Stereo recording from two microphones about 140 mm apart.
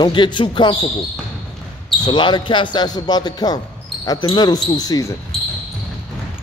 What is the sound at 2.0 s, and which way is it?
Speech, 35° left (ahead or behind).